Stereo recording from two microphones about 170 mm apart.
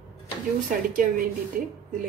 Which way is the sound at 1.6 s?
50° right (ahead or behind).